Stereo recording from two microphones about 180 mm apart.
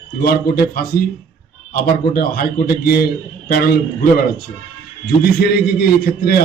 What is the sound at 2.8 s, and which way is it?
Speech, 60° left (ahead or behind).